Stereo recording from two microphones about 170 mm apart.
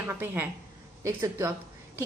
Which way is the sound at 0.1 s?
15° right (ahead or behind).